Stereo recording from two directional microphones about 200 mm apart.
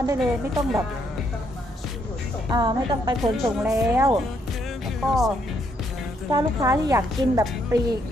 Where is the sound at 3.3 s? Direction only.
Centre (ahead or behind).